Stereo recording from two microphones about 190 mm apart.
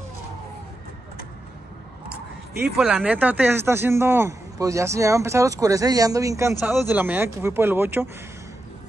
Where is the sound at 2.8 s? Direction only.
Centre (ahead or behind).